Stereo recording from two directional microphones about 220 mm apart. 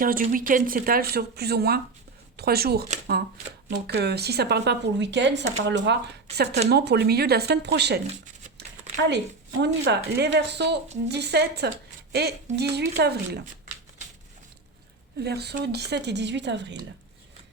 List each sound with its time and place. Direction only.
0.0 s speech: 40° right (ahead or behind)
15.2 s speech: 45° right (ahead or behind)